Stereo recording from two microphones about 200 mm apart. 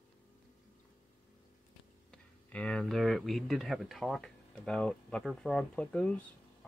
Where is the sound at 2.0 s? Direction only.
5° left (ahead or behind).